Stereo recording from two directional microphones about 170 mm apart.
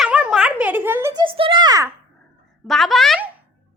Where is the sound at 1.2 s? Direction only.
30° right (ahead or behind).